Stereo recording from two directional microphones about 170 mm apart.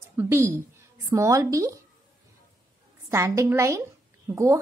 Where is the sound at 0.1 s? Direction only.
15° right (ahead or behind).